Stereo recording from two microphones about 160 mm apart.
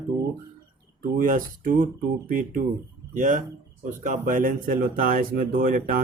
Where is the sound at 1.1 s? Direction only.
60° right (ahead or behind).